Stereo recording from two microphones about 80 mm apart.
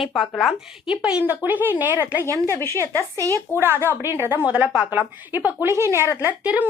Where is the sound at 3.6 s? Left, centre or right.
Right.